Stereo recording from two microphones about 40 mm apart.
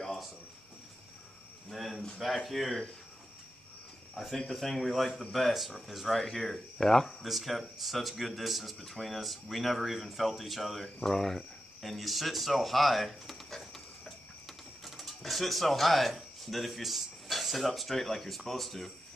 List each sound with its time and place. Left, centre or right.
1.7 s speech: centre
4.1 s speech: centre
7.2 s speech: centre